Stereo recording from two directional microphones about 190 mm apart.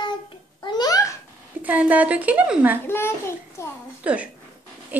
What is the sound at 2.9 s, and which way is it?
Speech, 15° left (ahead or behind).